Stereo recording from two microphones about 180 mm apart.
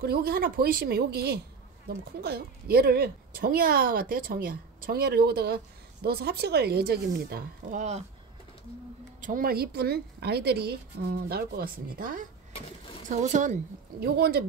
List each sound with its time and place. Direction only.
0.0 s speech: 60° right (ahead or behind)
9.2 s speech: 50° right (ahead or behind)
13.9 s speech: 60° right (ahead or behind)